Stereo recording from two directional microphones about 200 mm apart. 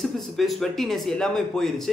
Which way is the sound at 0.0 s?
Centre (ahead or behind).